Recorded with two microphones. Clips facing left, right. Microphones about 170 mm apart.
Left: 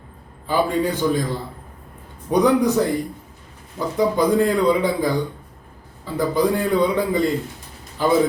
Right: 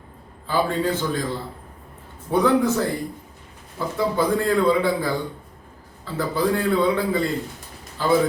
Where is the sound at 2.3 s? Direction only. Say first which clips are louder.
Left 2 dB; 15° left (ahead or behind).